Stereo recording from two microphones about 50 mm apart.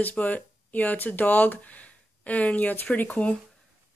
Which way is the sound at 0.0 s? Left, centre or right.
Left.